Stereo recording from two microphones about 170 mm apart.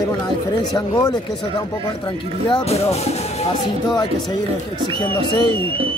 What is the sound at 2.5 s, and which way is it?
Speech, 40° left (ahead or behind).